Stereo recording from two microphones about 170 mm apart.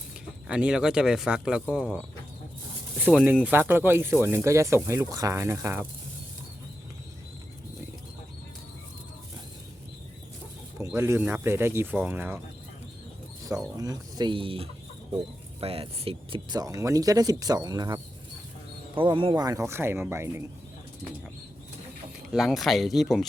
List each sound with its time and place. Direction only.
0.4 s speech: 5° right (ahead or behind)
10.8 s speech: 15° right (ahead or behind)
13.7 s speech: 20° right (ahead or behind)
22.3 s speech: centre (ahead or behind)